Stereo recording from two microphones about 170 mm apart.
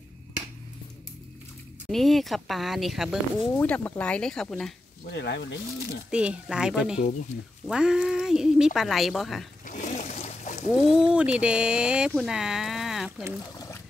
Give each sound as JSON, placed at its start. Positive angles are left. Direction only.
{"t": 1.9, "sound": "a woman's voice", "side_deg": 0}
{"t": 5.1, "sound": "speech", "side_deg": 90}
{"t": 6.0, "sound": "a woman's voice", "side_deg": -5}
{"t": 9.7, "sound": "boat", "side_deg": 45}
{"t": 10.7, "sound": "a woman's voice", "side_deg": -5}